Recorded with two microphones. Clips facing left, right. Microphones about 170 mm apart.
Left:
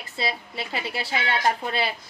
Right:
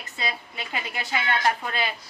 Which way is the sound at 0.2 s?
30° left (ahead or behind).